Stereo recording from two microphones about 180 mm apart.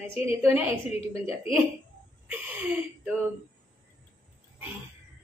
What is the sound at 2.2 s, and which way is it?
Speech, 10° right (ahead or behind).